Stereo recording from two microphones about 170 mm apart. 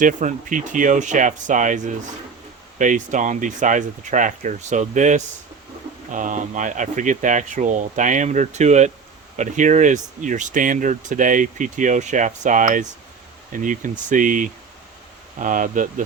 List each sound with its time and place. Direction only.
0.0 s speech: 50° right (ahead or behind)